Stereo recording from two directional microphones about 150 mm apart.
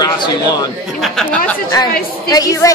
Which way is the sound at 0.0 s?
25° left (ahead or behind).